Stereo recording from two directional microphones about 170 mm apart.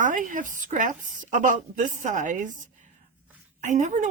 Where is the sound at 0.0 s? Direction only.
50° right (ahead or behind).